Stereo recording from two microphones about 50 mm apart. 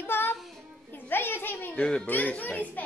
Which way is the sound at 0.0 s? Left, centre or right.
Left.